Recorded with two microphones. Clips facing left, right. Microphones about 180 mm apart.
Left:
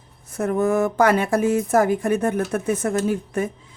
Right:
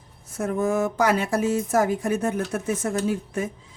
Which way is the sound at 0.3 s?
60° left (ahead or behind).